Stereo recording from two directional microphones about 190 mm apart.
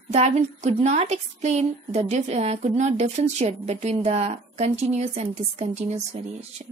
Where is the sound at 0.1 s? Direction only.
35° right (ahead or behind).